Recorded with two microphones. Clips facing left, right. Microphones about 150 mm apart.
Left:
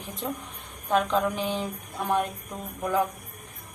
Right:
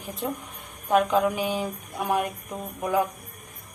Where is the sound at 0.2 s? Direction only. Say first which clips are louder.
Right 2 dB; 5° right (ahead or behind).